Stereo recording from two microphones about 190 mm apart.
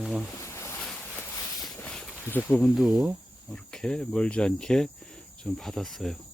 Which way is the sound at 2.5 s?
Centre (ahead or behind).